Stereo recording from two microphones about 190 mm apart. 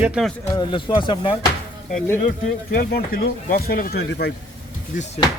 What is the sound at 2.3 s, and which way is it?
Speech, 55° left (ahead or behind).